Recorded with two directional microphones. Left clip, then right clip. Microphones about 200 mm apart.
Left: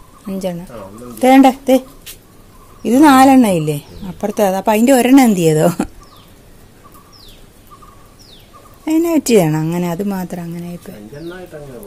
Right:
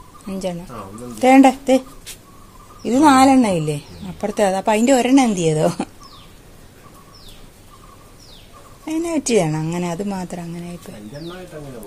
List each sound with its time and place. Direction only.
0.3 s speech: 20° left (ahead or behind)
8.8 s speech: 30° left (ahead or behind)